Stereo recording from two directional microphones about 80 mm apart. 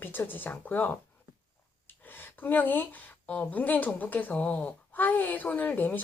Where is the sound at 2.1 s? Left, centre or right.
Left.